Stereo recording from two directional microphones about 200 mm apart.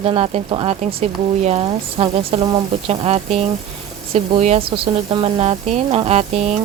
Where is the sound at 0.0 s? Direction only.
30° right (ahead or behind).